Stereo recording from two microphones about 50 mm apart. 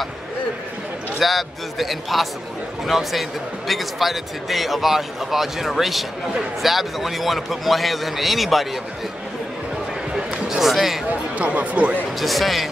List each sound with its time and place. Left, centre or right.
1.2 s speech: centre
10.6 s speech: centre
11.1 s speech: right
12.2 s speech: centre